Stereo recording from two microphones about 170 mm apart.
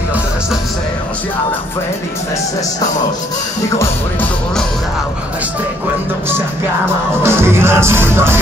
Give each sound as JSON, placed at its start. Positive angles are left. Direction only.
{"t": 3.7, "sound": "speech", "side_deg": 15}
{"t": 7.2, "sound": "music", "side_deg": -15}